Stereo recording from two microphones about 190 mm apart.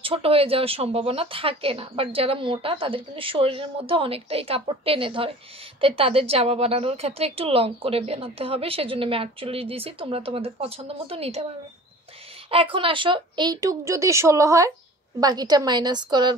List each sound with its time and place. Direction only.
0.0 s a woman's voice: 30° right (ahead or behind)
12.4 s speech: 30° right (ahead or behind)